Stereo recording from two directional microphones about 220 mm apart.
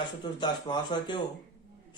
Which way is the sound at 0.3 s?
20° left (ahead or behind).